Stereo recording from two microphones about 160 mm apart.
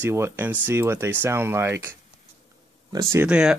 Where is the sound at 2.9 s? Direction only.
20° right (ahead or behind).